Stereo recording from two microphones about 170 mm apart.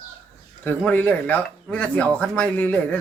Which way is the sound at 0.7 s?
10° left (ahead or behind).